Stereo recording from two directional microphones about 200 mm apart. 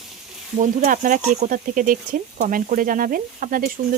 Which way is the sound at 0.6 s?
40° right (ahead or behind).